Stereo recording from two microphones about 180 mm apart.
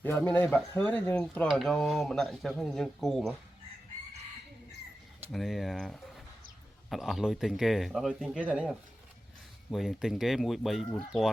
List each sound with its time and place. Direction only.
0.0 s speech: 10° left (ahead or behind)
5.3 s speech: centre (ahead or behind)
9.7 s speech: centre (ahead or behind)